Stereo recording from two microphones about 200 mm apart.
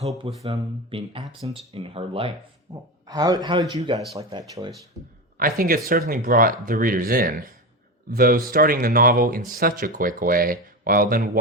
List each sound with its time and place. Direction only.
0.4 s a man's voice: 25° right (ahead or behind)
2.7 s a man's voice: 15° right (ahead or behind)
5.4 s speech: 45° right (ahead or behind)